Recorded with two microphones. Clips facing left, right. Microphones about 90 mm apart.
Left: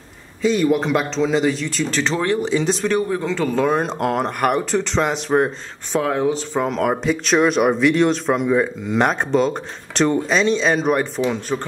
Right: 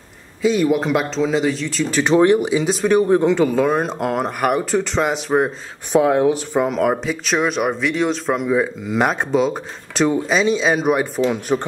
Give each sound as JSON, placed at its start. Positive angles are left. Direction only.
{"t": 0.4, "sound": "speech", "side_deg": -5}
{"t": 2.1, "sound": "speech", "side_deg": -15}
{"t": 3.4, "sound": "speech", "side_deg": -5}